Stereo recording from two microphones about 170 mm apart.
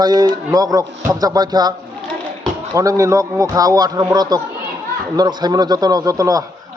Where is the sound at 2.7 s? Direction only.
20° right (ahead or behind).